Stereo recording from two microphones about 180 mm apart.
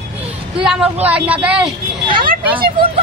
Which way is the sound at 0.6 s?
5° right (ahead or behind).